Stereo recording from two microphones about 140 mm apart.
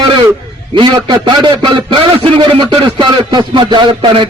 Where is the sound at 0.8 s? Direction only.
30° right (ahead or behind).